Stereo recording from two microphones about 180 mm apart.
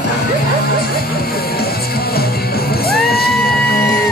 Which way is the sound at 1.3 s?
60° left (ahead or behind).